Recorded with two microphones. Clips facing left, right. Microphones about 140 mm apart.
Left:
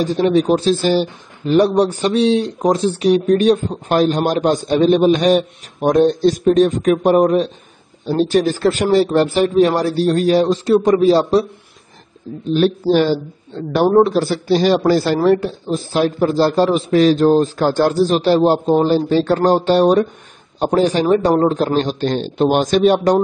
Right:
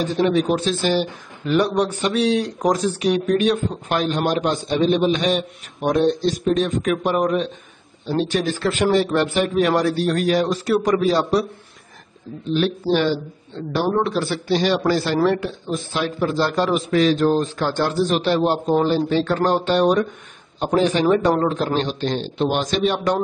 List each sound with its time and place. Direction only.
0.0 s a man's voice: 35° left (ahead or behind)
12.4 s a man's voice: 40° left (ahead or behind)